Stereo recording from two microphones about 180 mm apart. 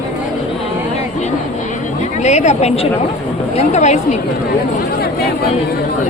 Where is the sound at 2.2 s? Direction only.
40° left (ahead or behind).